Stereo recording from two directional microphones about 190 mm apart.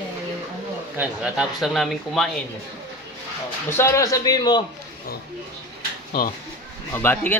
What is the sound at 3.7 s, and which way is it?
Speech, 15° left (ahead or behind).